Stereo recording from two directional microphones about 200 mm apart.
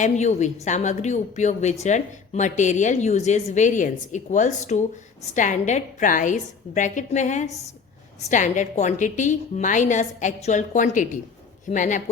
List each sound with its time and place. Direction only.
0.0 s a woman's voice: 35° left (ahead or behind)